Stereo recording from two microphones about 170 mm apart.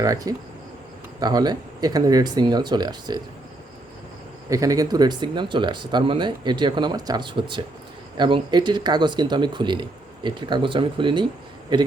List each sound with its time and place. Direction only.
0.0 s speech: 20° right (ahead or behind)
4.4 s speech: 20° right (ahead or behind)